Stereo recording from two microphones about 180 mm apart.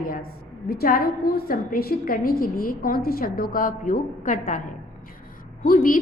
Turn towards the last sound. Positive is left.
turn(degrees=55)  # may be behind; listen again after turning